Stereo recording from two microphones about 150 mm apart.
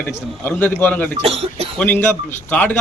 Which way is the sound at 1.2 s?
40° right (ahead or behind).